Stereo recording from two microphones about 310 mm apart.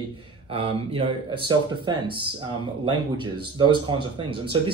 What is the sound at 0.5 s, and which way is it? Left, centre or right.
Speech, centre.